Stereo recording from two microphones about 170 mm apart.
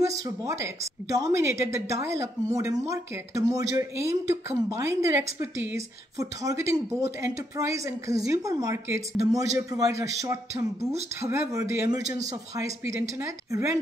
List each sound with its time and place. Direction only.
0.2 s a woman's voice: 20° right (ahead or behind)